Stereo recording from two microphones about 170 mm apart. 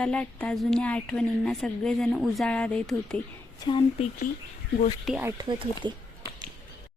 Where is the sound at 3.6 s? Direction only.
30° left (ahead or behind).